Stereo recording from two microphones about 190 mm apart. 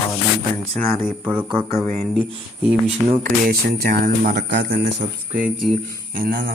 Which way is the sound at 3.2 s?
55° right (ahead or behind).